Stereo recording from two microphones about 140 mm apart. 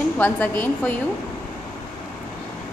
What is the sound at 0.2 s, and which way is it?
Speech, 10° left (ahead or behind).